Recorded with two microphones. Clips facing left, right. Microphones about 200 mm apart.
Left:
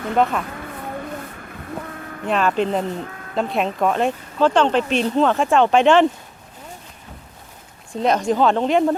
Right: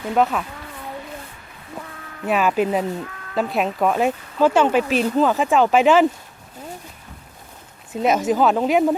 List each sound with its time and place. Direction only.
0.0 s speech: 5° right (ahead or behind)
0.9 s a sound: 60° left (ahead or behind)
2.2 s speech: 5° right (ahead or behind)
7.9 s speech: 5° right (ahead or behind)